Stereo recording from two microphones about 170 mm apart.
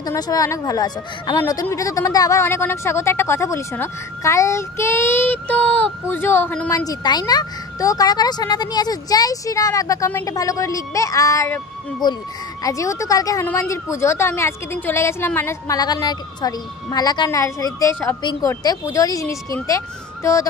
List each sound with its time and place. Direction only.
0.0 s speech: 20° left (ahead or behind)
6.9 s speech: 25° left (ahead or behind)